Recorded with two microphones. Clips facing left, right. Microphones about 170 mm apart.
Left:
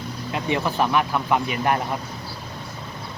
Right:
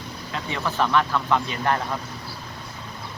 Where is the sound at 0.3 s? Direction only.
15° left (ahead or behind).